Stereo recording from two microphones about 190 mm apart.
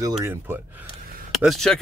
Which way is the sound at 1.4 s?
Centre (ahead or behind).